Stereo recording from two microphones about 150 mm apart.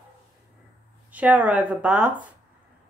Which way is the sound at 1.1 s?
10° right (ahead or behind).